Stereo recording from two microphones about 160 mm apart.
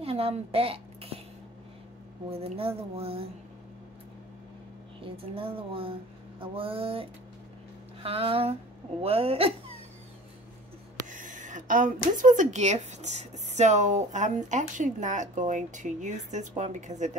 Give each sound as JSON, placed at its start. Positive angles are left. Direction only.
{"t": 0.0, "sound": "a woman's voice", "side_deg": -40}
{"t": 2.3, "sound": "a woman's voice", "side_deg": -40}
{"t": 5.0, "sound": "a woman's voice", "side_deg": -35}
{"t": 11.1, "sound": "speech", "side_deg": -55}